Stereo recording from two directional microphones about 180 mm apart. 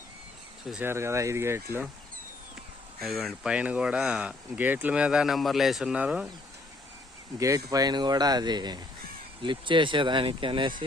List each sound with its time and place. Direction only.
0.7 s speech: 10° right (ahead or behind)
3.0 s speech: centre (ahead or behind)
7.3 s speech: 20° right (ahead or behind)